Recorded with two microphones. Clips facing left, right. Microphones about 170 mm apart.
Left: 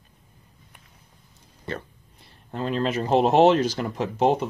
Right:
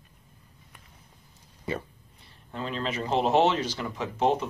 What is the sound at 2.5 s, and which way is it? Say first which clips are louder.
Speech: left 6 dB; 45° left (ahead or behind).